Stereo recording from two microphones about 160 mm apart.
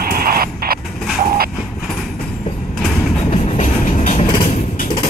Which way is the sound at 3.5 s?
50° left (ahead or behind).